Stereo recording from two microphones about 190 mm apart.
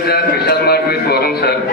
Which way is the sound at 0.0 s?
55° left (ahead or behind).